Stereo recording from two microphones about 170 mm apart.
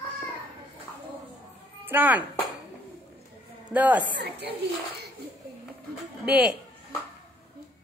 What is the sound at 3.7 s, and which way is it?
Speech, 10° right (ahead or behind).